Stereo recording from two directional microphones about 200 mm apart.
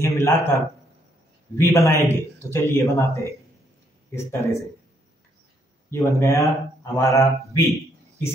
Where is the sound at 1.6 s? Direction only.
15° left (ahead or behind).